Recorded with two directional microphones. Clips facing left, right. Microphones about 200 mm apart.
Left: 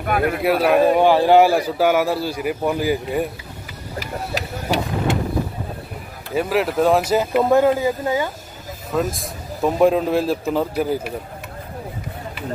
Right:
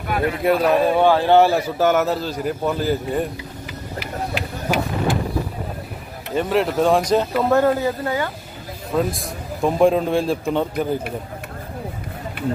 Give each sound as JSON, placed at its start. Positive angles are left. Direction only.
{"t": 0.0, "sound": "speech", "side_deg": 55}
{"t": 0.4, "sound": "a man's voice", "side_deg": 5}
{"t": 4.0, "sound": "vehicle", "side_deg": 40}
{"t": 6.3, "sound": "a man's voice", "side_deg": 5}
{"t": 8.9, "sound": "a man's voice", "side_deg": 0}